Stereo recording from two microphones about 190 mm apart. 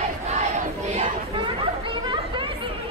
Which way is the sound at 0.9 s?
30° right (ahead or behind).